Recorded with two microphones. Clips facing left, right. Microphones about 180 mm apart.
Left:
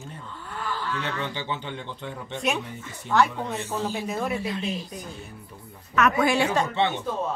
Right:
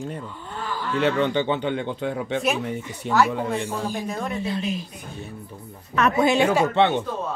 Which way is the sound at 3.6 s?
10° right (ahead or behind).